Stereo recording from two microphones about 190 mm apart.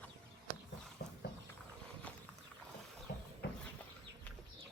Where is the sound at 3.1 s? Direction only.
50° left (ahead or behind).